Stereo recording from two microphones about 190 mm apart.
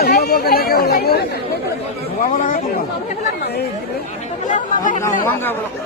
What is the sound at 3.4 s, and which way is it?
Speech, 55° left (ahead or behind).